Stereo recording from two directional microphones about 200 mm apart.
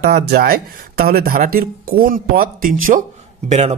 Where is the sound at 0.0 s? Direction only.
50° right (ahead or behind).